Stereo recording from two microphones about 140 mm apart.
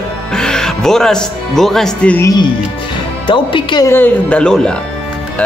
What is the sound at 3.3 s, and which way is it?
Speech, 35° left (ahead or behind).